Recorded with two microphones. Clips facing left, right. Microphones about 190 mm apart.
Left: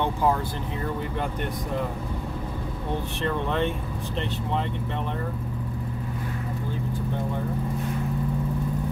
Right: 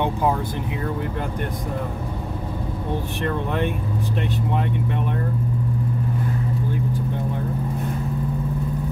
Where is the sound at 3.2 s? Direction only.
10° right (ahead or behind).